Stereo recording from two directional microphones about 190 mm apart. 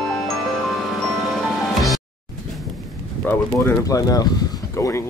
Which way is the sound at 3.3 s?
15° left (ahead or behind).